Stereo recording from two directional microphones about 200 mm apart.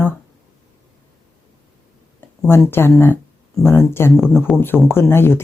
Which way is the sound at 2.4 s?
10° left (ahead or behind).